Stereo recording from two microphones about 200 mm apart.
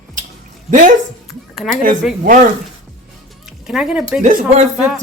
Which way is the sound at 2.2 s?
40° right (ahead or behind).